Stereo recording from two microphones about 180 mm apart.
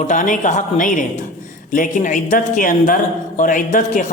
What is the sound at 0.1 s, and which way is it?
Speech, 45° left (ahead or behind).